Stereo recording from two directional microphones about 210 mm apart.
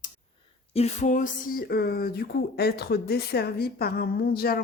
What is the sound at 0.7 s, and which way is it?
Speech, 30° left (ahead or behind).